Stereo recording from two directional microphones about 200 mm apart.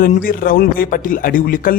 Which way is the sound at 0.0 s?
45° left (ahead or behind).